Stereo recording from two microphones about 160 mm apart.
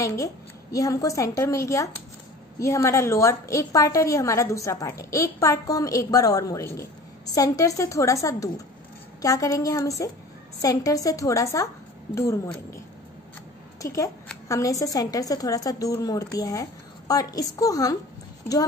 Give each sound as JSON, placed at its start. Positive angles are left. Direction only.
{"t": 0.0, "sound": "a woman's voice", "side_deg": 20}
{"t": 13.7, "sound": "a woman's voice", "side_deg": 20}